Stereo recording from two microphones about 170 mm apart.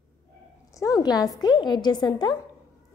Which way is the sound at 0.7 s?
20° left (ahead or behind).